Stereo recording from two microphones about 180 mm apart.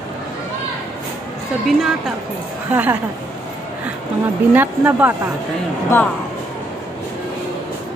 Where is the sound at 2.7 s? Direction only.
10° right (ahead or behind).